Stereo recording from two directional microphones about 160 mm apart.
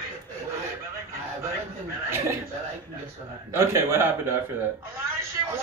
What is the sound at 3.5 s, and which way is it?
Speech, 15° right (ahead or behind).